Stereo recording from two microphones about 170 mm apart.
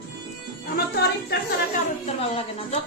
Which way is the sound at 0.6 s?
65° left (ahead or behind).